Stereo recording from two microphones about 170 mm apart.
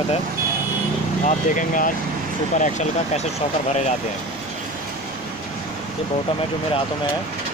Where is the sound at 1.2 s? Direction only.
50° left (ahead or behind).